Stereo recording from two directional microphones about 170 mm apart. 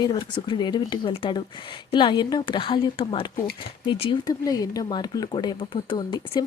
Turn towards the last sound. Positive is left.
turn(degrees=25)  # may be behind; listen again after turning